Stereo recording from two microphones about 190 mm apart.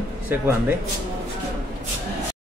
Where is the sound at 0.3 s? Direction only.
10° right (ahead or behind).